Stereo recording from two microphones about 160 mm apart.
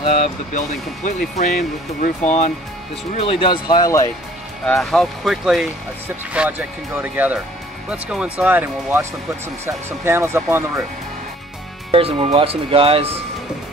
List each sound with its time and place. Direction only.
0.0 s speech: 40° left (ahead or behind)
3.2 s speech: 35° left (ahead or behind)
4.6 s speech: centre (ahead or behind); by 10.6 s 15° right (ahead or behind)
11.9 s speech: 35° right (ahead or behind)